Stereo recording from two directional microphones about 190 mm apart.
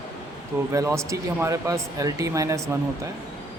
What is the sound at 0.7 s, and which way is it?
Speech, 15° right (ahead or behind).